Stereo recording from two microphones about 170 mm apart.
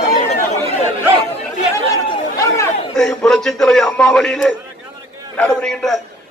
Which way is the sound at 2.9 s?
5° left (ahead or behind).